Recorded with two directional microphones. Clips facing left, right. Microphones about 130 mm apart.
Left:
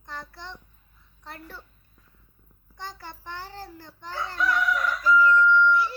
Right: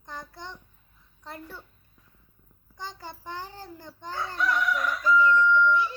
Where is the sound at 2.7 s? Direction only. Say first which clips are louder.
Even; 15° right (ahead or behind).